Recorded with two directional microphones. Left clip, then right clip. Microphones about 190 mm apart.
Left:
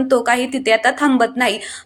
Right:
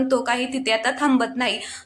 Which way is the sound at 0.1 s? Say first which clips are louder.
Left 6 dB; 20° left (ahead or behind).